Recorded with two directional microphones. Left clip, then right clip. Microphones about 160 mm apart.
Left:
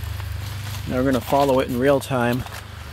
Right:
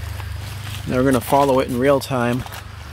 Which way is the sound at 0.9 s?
40° right (ahead or behind).